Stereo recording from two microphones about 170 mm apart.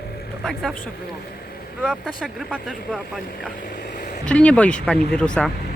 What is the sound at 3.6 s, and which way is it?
Boat, 65° left (ahead or behind).